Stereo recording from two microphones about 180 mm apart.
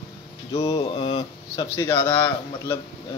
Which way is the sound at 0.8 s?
30° left (ahead or behind).